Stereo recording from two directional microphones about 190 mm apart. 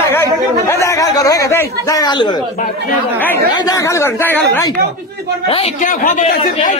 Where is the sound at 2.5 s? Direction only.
45° left (ahead or behind).